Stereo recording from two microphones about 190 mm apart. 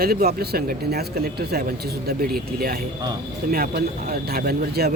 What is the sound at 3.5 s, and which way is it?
A man's voice, 50° right (ahead or behind).